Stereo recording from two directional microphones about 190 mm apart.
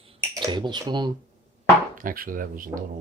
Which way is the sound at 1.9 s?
45° right (ahead or behind).